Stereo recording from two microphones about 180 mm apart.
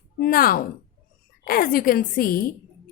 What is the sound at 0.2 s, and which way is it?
A woman's voice, 55° left (ahead or behind).